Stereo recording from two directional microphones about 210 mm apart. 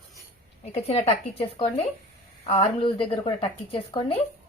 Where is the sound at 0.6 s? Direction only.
30° left (ahead or behind).